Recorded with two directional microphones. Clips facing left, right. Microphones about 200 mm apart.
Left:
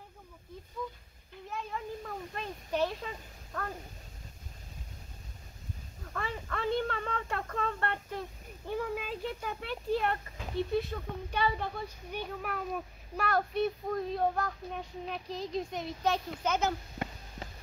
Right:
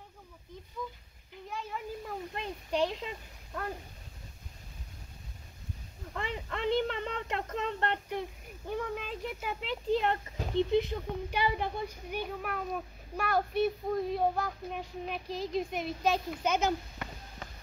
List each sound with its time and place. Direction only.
2.0 s a child's voice: 15° right (ahead or behind)
6.1 s speech: 20° right (ahead or behind)
8.6 s speech: 5° left (ahead or behind); by 10.1 s 20° right (ahead or behind)
10.4 s a sound: 40° right (ahead or behind)
10.7 s a child's voice: 20° right (ahead or behind)
12.1 s a child's voice: 5° right (ahead or behind)
17.0 s a sound: 30° left (ahead or behind)